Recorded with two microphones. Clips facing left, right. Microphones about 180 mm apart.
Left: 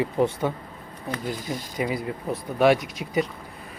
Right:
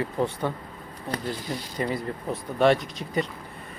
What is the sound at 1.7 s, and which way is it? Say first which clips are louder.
A man's voice: left 1 dB; 5° left (ahead or behind).